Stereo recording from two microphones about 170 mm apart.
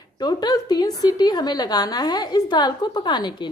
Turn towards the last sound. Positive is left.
turn(degrees=25)  # may be behind; listen again after turning